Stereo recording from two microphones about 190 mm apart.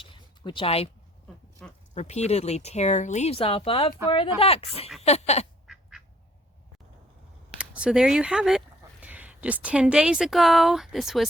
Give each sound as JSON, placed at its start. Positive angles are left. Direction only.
{"t": 0.0, "sound": "a sound", "side_deg": 25}
{"t": 1.6, "sound": "speech", "side_deg": 5}
{"t": 2.0, "sound": "speech", "side_deg": 35}
{"t": 5.6, "sound": "quack", "side_deg": 0}
{"t": 7.6, "sound": "speech", "side_deg": -5}